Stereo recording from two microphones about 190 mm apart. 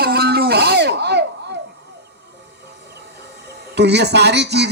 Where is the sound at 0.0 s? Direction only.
55° right (ahead or behind).